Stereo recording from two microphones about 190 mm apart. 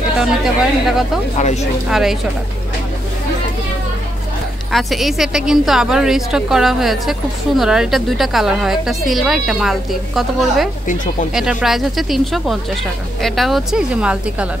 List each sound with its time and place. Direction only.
0.2 s a woman's voice: centre (ahead or behind)
1.4 s speech: 35° left (ahead or behind)
1.9 s a woman's voice: centre (ahead or behind)
4.7 s a woman's voice: centre (ahead or behind)